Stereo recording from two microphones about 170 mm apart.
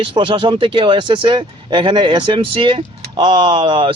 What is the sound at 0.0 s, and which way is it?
Speech, 30° right (ahead or behind).